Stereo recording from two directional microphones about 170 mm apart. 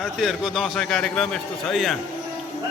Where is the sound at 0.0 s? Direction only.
Centre (ahead or behind).